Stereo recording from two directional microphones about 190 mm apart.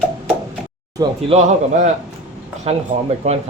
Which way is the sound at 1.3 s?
40° right (ahead or behind).